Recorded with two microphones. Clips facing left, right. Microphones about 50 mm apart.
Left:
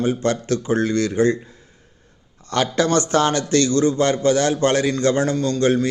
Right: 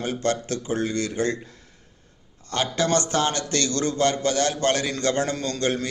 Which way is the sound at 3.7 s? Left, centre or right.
Left.